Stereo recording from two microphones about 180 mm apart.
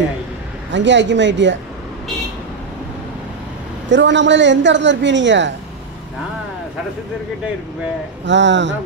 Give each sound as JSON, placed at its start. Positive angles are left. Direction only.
{"t": 0.7, "sound": "a woman's voice", "side_deg": -80}
{"t": 3.9, "sound": "a woman's voice", "side_deg": -85}
{"t": 8.3, "sound": "a woman's voice", "side_deg": -80}